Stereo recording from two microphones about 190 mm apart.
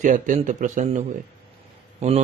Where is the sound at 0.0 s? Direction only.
45° right (ahead or behind).